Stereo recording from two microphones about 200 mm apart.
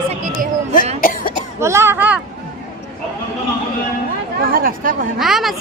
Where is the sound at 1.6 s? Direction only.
15° right (ahead or behind).